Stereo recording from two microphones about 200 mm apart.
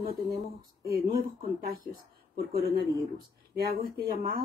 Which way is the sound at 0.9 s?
50° right (ahead or behind).